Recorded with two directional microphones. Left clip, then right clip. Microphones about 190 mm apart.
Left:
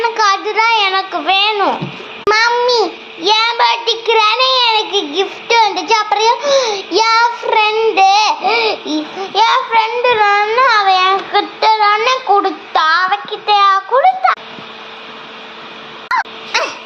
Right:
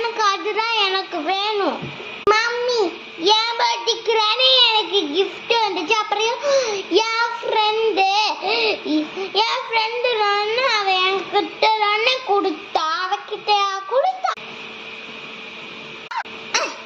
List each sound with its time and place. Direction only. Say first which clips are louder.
0.0 s child singing: left 7 dB; 20° right (ahead or behind)
1.3 s a sound: left 8 dB; 15° right (ahead or behind)
2.2 s child singing: left 6 dB; 20° right (ahead or behind)
8.9 s a sound: left 3 dB; 20° right (ahead or behind)
12.7 s child singing: left 11 dB; 15° right (ahead or behind)
16.5 s dog: left 5 dB; 20° right (ahead or behind)